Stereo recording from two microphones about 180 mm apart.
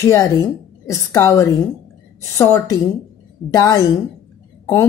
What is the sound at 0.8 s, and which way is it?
A woman's voice, 15° left (ahead or behind).